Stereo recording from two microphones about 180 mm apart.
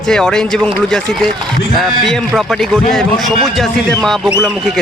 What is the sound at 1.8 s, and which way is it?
Speech, centre (ahead or behind).